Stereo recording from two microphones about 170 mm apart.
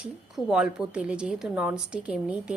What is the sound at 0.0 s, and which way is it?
Speech, 5° right (ahead or behind).